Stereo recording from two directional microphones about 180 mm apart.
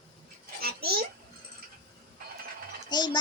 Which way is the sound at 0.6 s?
60° right (ahead or behind).